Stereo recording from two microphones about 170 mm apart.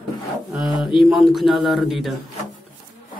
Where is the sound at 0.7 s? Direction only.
25° left (ahead or behind).